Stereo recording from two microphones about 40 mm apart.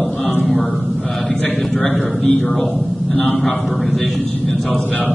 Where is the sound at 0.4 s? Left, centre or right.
Centre.